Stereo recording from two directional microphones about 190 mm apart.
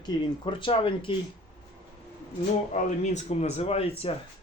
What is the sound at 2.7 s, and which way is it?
Speech, 40° left (ahead or behind).